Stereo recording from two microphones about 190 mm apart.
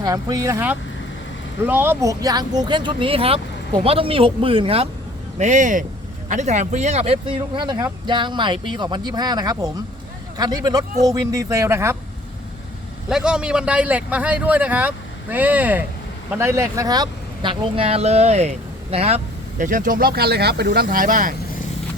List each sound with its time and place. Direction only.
0.0 s a man's voice: 20° right (ahead or behind)
5.4 s a man's voice: 40° right (ahead or behind); by 11.9 s 15° right (ahead or behind)
13.1 s a man's voice: 5° right (ahead or behind); by 21.3 s 45° right (ahead or behind)